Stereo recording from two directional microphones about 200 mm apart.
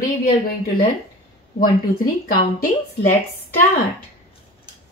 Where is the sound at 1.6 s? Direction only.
45° left (ahead or behind).